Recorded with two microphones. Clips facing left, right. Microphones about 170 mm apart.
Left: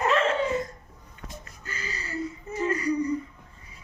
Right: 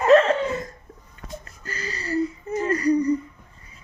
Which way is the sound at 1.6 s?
40° right (ahead or behind).